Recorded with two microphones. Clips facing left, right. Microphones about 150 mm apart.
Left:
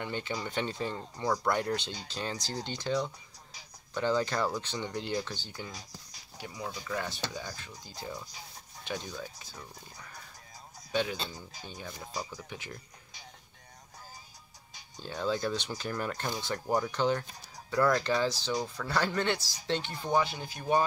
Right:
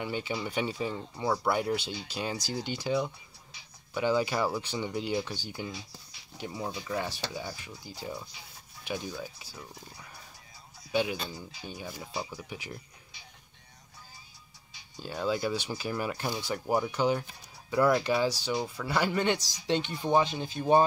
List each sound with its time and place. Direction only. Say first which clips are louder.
0.0 s speech: right 2 dB; 10° right (ahead or behind)
6.3 s speech: right 4 dB; 25° right (ahead or behind)
6.8 s speech: even; 15° right (ahead or behind)
15.0 s speech: right 1 dB; 5° right (ahead or behind); by 20.8 s 30° right (ahead or behind)